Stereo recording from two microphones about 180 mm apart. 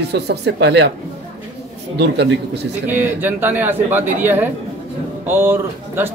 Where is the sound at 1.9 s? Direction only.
70° right (ahead or behind).